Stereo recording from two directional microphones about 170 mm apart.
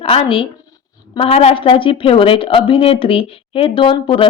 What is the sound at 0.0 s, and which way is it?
A woman's voice, 35° left (ahead or behind).